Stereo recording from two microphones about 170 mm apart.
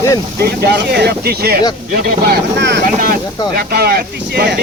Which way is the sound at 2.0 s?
75° right (ahead or behind).